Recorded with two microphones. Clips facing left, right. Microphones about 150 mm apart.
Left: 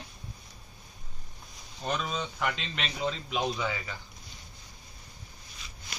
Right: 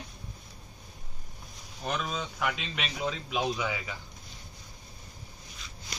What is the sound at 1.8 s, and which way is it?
A man's voice, 5° right (ahead or behind).